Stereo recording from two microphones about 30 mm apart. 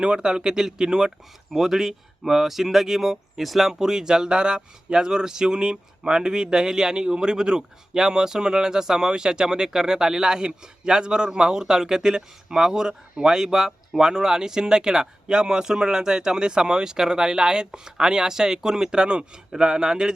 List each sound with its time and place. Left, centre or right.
0.0 s a man's voice: right
1.5 s speech: centre
3.7 s speech: centre
11.3 s speech: right
13.2 s speech: centre
18.9 s a man's voice: right
19.5 s speech: right